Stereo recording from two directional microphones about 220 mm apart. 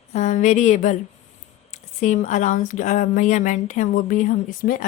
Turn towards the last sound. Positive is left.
turn(degrees=40)  # may be behind; listen again after turning